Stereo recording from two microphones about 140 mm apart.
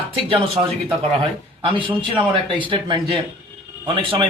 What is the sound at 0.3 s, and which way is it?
Speech, 45° right (ahead or behind).